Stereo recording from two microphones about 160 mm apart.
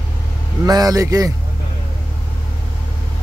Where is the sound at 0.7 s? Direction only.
25° right (ahead or behind).